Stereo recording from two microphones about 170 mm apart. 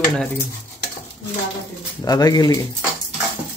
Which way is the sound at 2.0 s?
20° left (ahead or behind).